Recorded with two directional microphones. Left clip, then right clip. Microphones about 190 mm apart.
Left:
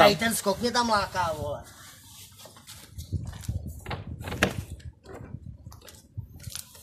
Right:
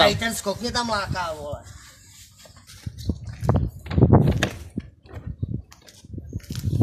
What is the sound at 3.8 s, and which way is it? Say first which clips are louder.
Horse: right 17 dB; 20° left (ahead or behind).